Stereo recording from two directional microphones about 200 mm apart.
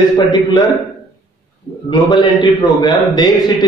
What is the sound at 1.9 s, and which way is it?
A man's voice, 20° left (ahead or behind).